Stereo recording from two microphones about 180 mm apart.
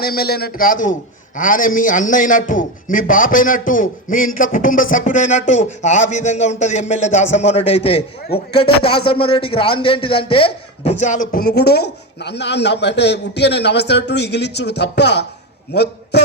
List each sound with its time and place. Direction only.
0.0 s a man's voice: 60° left (ahead or behind)